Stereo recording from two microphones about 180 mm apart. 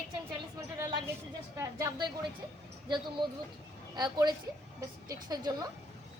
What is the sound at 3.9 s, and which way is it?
A woman's voice, 25° right (ahead or behind).